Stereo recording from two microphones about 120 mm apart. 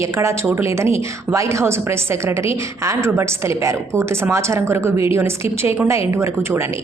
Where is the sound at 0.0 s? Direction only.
20° right (ahead or behind).